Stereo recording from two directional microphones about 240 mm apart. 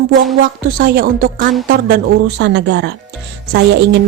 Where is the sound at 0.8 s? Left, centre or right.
Right.